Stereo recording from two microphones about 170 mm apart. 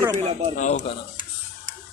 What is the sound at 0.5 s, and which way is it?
Speech, 40° left (ahead or behind).